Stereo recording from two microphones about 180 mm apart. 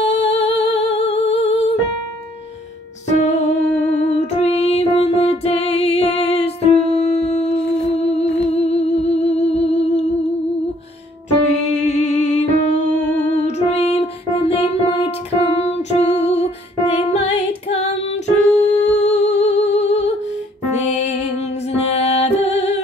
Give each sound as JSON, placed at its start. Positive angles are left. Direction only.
{"t": 0.0, "sound": "music", "side_deg": 35}
{"t": 3.1, "sound": "music", "side_deg": 40}
{"t": 11.8, "sound": "music", "side_deg": 40}
{"t": 17.6, "sound": "female singing", "side_deg": 35}
{"t": 18.6, "sound": "humming", "side_deg": 35}
{"t": 21.7, "sound": "music", "side_deg": 35}